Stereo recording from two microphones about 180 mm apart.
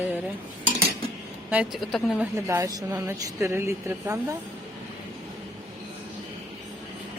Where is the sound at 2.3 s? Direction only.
15° right (ahead or behind).